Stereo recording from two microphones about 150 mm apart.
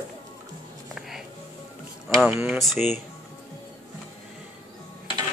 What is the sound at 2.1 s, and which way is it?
Speech, 5° right (ahead or behind).